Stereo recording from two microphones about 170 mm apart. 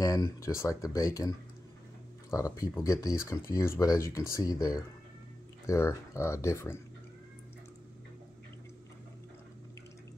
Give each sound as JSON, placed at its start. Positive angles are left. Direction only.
{"t": 0.0, "sound": "speech", "side_deg": 20}
{"t": 2.3, "sound": "speech", "side_deg": 20}